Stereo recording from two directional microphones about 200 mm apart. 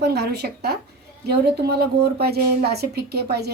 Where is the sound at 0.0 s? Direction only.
55° right (ahead or behind).